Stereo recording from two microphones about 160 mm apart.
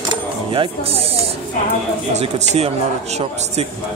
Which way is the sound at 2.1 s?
40° right (ahead or behind).